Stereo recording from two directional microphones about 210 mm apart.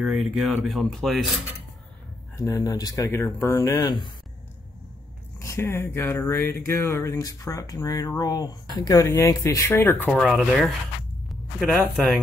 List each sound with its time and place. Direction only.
0.0 s speech: centre (ahead or behind)
2.3 s speech: 15° left (ahead or behind)
5.4 s speech: 15° left (ahead or behind)
10.0 s a man's voice: centre (ahead or behind)